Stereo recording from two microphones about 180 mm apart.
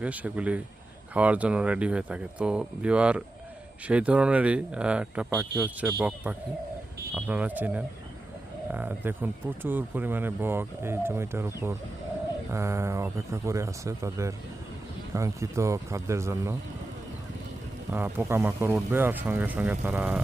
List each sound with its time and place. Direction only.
0.0 s speech: 10° right (ahead or behind)
5.3 s speech: 20° right (ahead or behind)
6.0 s speech: 5° right (ahead or behind)
17.9 s speech: 10° right (ahead or behind)